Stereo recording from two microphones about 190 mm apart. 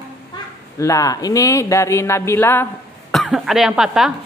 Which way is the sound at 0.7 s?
15° left (ahead or behind).